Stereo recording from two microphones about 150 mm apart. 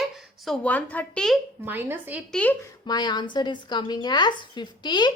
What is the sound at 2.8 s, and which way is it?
A woman's voice, 30° left (ahead or behind).